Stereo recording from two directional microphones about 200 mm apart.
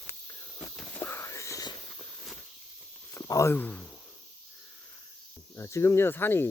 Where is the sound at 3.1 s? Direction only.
15° left (ahead or behind).